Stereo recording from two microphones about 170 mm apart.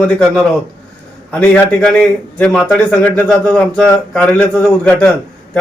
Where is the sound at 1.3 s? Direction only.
10° left (ahead or behind).